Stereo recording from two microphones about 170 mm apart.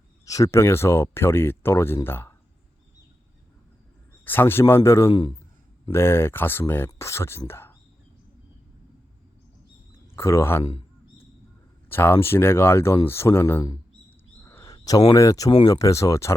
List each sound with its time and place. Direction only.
0.3 s speech: 20° left (ahead or behind)
4.3 s speech: 10° left (ahead or behind)
10.2 s speech: 15° left (ahead or behind)
10.6 s speech: 35° left (ahead or behind)
11.9 s speech: 15° left (ahead or behind)
14.4 s a sound: 15° left (ahead or behind)
15.1 s speech: 20° left (ahead or behind)